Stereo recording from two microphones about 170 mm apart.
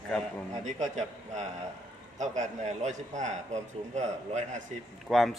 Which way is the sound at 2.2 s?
45° right (ahead or behind).